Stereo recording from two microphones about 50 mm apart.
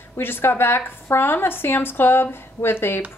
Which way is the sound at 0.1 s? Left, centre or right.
Left.